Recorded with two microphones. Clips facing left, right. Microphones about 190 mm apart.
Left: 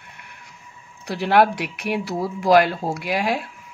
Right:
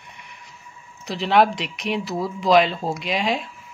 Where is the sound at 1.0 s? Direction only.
10° left (ahead or behind).